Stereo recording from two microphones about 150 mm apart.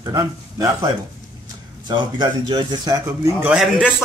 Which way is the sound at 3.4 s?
5° right (ahead or behind).